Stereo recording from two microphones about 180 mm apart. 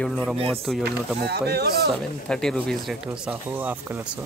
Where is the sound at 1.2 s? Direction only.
65° right (ahead or behind).